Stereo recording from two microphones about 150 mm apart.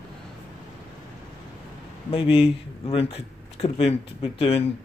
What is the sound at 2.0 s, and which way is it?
Speech, 40° left (ahead or behind).